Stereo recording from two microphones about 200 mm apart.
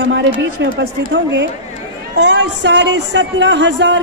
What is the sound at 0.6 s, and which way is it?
Speech, 60° right (ahead or behind).